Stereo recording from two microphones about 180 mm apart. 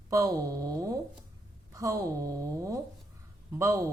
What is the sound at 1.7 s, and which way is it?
A man's voice, 20° right (ahead or behind).